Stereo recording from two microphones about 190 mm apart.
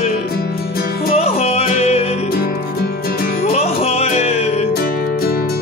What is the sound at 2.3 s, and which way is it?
Music, 55° left (ahead or behind).